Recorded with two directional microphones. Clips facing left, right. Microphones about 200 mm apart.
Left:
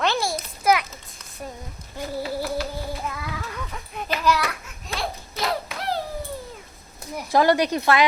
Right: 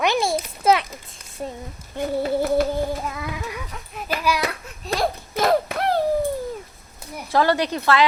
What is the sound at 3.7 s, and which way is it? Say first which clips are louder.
Speech: left 1 dB; centre (ahead or behind).